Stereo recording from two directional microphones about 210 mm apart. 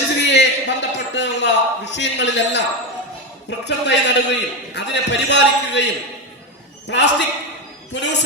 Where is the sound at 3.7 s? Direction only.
55° left (ahead or behind).